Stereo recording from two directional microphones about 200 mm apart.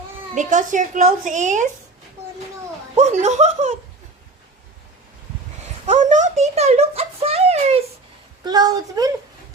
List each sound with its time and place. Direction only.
0.3 s a woman's voice: 40° right (ahead or behind)
2.9 s a woman's voice: 35° right (ahead or behind)
5.9 s a child's voice: 35° right (ahead or behind)
8.4 s a woman's voice: 20° right (ahead or behind)